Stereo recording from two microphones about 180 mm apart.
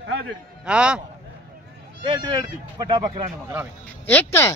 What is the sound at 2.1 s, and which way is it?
Speech, 20° right (ahead or behind).